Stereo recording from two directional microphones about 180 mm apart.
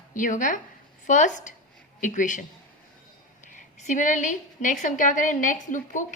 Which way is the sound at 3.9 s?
45° left (ahead or behind).